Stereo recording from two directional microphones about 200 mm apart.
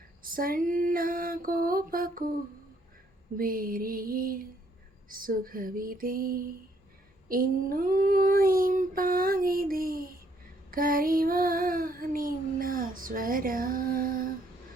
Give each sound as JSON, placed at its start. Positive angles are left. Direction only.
{"t": 0.2, "sound": "child singing", "side_deg": -45}
{"t": 3.3, "sound": "child singing", "side_deg": -45}